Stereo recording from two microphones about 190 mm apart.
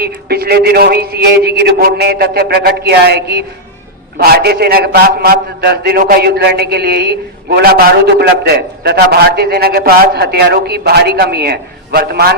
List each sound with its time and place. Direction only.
0.0 s a man's voice: 55° right (ahead or behind)